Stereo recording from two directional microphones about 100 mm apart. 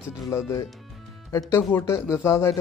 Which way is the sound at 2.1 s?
30° left (ahead or behind).